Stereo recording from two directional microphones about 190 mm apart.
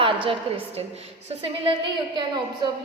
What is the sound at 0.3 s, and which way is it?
Speech, 30° right (ahead or behind).